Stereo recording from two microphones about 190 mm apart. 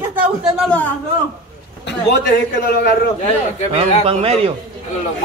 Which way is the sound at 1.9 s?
55° left (ahead or behind).